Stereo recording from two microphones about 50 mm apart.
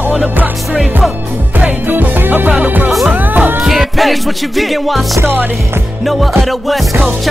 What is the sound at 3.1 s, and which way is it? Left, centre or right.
Music, right.